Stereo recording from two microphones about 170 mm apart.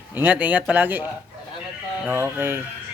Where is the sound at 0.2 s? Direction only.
10° right (ahead or behind).